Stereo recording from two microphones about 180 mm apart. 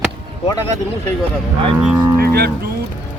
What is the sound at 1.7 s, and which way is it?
Speech, 10° right (ahead or behind).